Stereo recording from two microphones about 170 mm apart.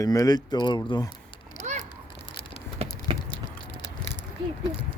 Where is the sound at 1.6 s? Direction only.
45° right (ahead or behind).